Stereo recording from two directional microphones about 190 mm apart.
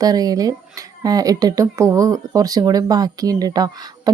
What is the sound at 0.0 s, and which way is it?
Speech, 20° right (ahead or behind).